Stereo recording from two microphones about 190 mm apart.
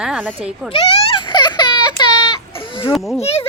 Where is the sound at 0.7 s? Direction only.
25° left (ahead or behind).